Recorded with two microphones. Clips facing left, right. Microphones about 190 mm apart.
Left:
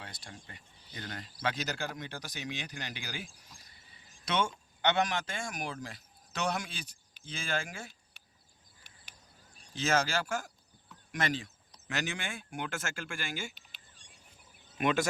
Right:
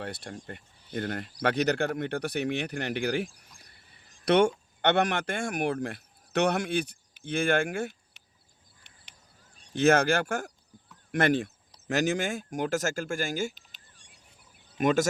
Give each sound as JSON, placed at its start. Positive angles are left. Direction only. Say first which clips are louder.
{"t": 0.0, "sound": "speech", "louder": "right 11 dB", "side_deg": -60}
{"t": 9.7, "sound": "speech", "louder": "right 8 dB", "side_deg": -60}
{"t": 11.9, "sound": "speech", "louder": "right 10 dB", "side_deg": -45}